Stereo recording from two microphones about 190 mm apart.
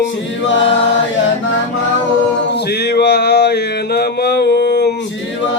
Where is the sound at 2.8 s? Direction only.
60° left (ahead or behind).